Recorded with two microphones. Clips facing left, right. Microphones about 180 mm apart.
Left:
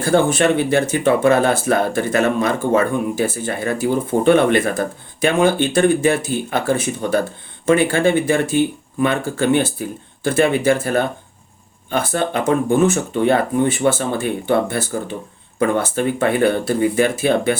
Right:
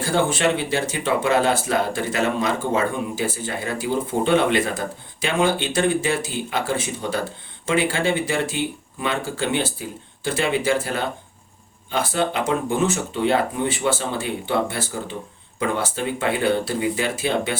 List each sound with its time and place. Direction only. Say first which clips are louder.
0.0 s speech: left 5 dB; 50° left (ahead or behind)